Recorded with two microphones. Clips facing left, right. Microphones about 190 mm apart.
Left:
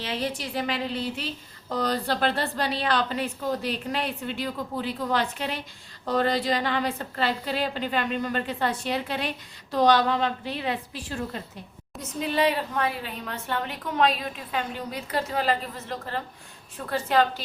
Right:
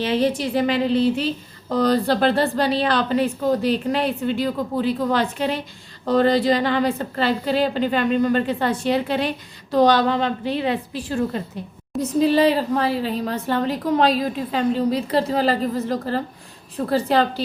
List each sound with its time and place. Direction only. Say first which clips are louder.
0.0 s a woman's voice: right 10 dB; 25° right (ahead or behind)
11.9 s a woman's voice: right 9 dB; 35° right (ahead or behind)